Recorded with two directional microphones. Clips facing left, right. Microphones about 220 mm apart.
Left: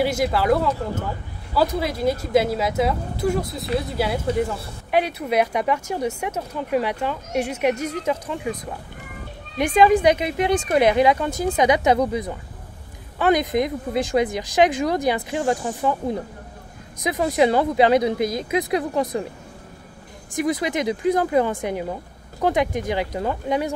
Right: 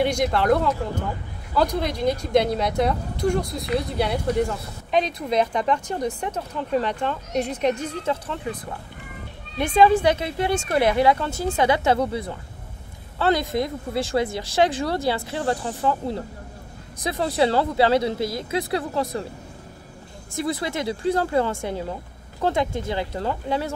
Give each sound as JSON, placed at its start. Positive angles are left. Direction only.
{"t": 0.0, "sound": "a woman's voice", "side_deg": 5}
{"t": 9.6, "sound": "a woman's voice", "side_deg": 15}
{"t": 20.3, "sound": "a woman's voice", "side_deg": 15}